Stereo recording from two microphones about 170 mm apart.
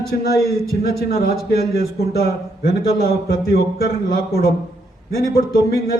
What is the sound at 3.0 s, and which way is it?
Speech, 65° left (ahead or behind).